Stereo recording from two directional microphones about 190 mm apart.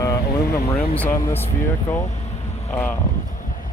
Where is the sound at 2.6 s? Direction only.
10° left (ahead or behind).